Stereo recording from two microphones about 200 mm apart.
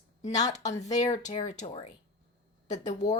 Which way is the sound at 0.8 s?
35° left (ahead or behind).